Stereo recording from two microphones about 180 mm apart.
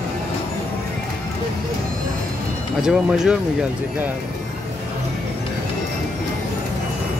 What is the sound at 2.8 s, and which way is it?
Speech, 5° right (ahead or behind).